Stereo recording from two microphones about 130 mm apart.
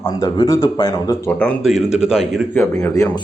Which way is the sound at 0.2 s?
30° left (ahead or behind).